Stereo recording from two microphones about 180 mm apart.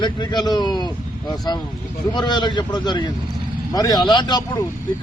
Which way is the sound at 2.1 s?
25° left (ahead or behind).